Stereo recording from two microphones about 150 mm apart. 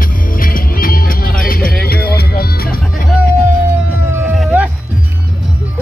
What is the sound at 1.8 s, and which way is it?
Music, 90° left.